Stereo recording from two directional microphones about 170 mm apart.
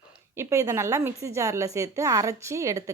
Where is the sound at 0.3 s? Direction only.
15° right (ahead or behind).